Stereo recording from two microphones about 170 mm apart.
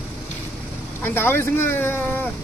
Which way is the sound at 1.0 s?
10° left (ahead or behind).